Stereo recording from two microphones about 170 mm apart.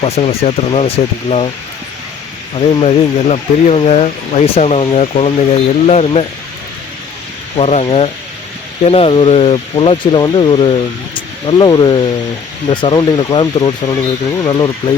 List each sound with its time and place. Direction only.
0.0 s speech: 35° left (ahead or behind)
2.6 s speech: 35° left (ahead or behind)
7.5 s speech: 40° left (ahead or behind)